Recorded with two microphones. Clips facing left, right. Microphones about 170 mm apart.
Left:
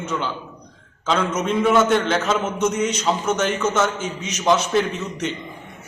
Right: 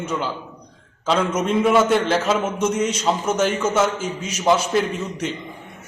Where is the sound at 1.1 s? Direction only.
5° right (ahead or behind).